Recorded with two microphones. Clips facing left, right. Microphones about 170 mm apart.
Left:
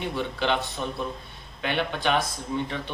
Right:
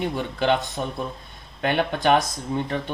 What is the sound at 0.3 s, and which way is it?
Speech, 45° right (ahead or behind).